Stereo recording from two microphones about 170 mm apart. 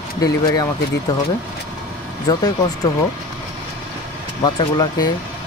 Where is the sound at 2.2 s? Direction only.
20° left (ahead or behind).